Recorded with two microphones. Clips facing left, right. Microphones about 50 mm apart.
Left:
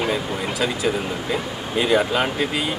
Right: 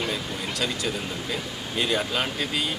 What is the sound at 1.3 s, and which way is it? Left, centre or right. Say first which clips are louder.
Speech: left 6 dB; centre.